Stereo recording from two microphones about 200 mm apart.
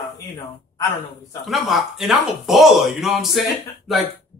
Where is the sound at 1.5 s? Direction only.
Centre (ahead or behind).